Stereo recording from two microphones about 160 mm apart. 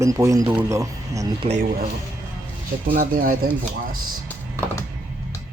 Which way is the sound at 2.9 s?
60° right (ahead or behind).